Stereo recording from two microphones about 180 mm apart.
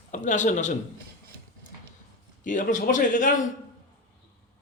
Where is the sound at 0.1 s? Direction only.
45° left (ahead or behind).